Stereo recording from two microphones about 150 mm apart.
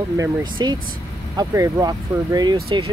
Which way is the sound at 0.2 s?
30° right (ahead or behind).